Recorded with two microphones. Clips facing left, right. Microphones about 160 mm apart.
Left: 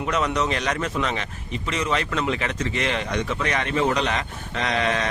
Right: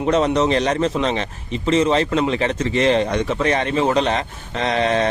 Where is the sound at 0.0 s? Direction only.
30° right (ahead or behind).